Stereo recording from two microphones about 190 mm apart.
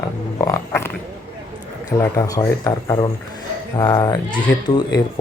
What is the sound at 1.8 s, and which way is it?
Speech, 20° left (ahead or behind).